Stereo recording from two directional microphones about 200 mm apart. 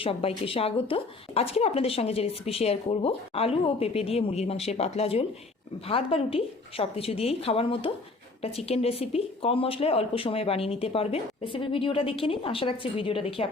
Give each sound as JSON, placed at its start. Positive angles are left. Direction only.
{"t": 0.0, "sound": "a woman's voice", "side_deg": 30}